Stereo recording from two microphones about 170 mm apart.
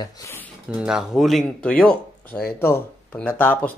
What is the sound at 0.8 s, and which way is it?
Speech, 5° right (ahead or behind).